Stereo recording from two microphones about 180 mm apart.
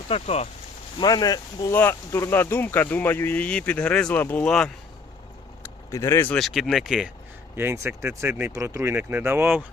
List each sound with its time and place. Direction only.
0.1 s speech: 35° left (ahead or behind)
0.9 s speech: 20° left (ahead or behind); by 4.7 s 5° left (ahead or behind)
5.6 s speech: 15° left (ahead or behind); by 7.1 s centre (ahead or behind)
7.5 s speech: 15° right (ahead or behind)